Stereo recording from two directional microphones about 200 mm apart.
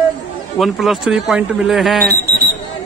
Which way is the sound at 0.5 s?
Centre (ahead or behind).